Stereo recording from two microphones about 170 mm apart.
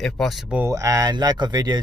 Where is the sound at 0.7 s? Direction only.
20° right (ahead or behind).